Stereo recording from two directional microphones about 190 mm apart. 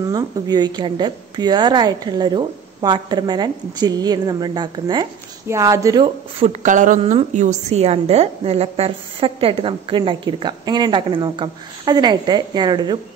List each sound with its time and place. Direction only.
0.0 s a woman's voice: 20° right (ahead or behind)
6.4 s a woman's voice: 40° right (ahead or behind); by 13.0 s 20° right (ahead or behind)